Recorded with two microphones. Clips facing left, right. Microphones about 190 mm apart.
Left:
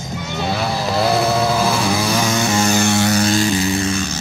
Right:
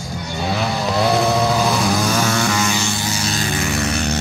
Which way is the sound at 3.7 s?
70° right (ahead or behind).